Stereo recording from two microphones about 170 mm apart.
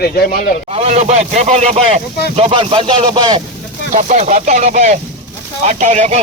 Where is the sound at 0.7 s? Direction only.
40° right (ahead or behind).